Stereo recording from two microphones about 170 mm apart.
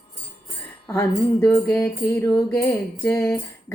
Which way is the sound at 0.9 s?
15° left (ahead or behind).